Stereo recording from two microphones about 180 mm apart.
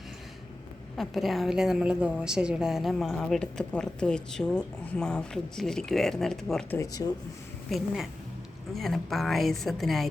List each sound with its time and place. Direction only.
0.9 s a woman's voice: centre (ahead or behind)
6.7 s speech: 20° left (ahead or behind)
7.7 s a woman's voice: centre (ahead or behind)